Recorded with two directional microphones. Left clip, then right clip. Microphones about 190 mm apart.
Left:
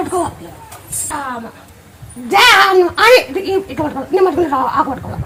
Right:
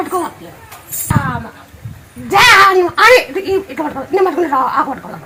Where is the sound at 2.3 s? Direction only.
30° left (ahead or behind).